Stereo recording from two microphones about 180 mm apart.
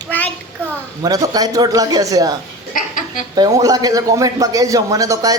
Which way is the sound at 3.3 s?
20° right (ahead or behind).